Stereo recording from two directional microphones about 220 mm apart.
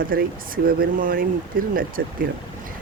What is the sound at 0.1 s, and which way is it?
Speech, 40° right (ahead or behind).